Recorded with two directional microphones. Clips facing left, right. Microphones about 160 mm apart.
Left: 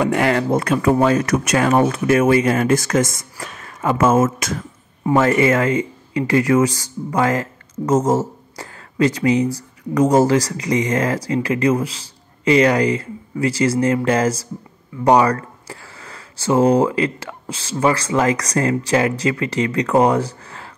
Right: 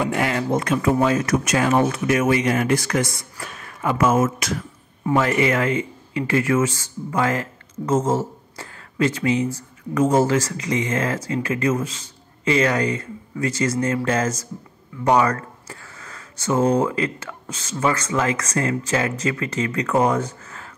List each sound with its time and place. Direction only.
0.0 s speech: 65° left (ahead or behind); by 20.7 s 35° left (ahead or behind)